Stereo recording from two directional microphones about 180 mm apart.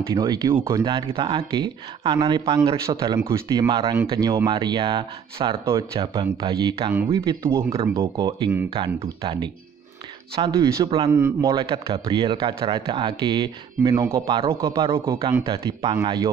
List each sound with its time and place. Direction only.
0.1 s speech: 20° right (ahead or behind)
7.4 s speech: 15° right (ahead or behind)
10.5 s speech: 20° right (ahead or behind)
11.7 s speech: 30° right (ahead or behind)